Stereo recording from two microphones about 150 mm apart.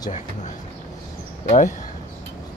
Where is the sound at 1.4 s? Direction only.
55° left (ahead or behind).